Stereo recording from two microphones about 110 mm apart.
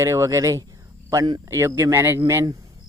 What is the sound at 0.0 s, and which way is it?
Speech, 30° right (ahead or behind).